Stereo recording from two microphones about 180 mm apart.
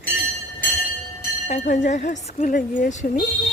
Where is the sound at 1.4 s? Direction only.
45° left (ahead or behind).